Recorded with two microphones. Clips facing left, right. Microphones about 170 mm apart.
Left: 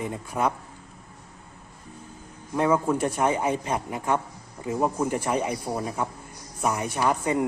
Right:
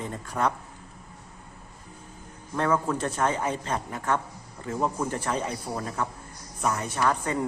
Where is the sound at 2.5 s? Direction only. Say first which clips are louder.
Left 3 dB; 10° left (ahead or behind).